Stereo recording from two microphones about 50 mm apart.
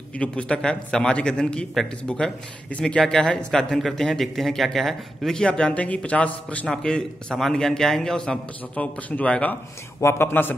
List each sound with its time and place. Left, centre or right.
0.2 s a man's voice: left
3.7 s speech: centre
5.3 s a man's voice: centre
6.7 s a man's voice: centre
8.7 s a man's voice: left
9.9 s a man's voice: left
10.2 s a man's voice: left